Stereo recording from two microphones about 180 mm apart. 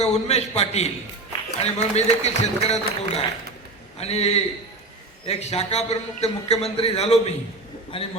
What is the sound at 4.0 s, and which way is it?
A man's voice, 35° left (ahead or behind).